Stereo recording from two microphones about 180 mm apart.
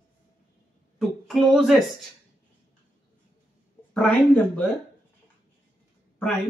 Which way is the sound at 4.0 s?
5° left (ahead or behind).